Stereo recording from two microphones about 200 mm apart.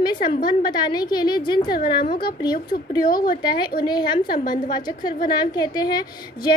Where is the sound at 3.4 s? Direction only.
20° left (ahead or behind).